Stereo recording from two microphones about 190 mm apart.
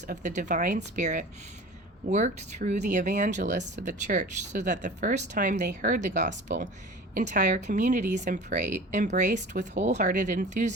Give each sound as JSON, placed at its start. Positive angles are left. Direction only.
{"t": 0.1, "sound": "speech", "side_deg": -40}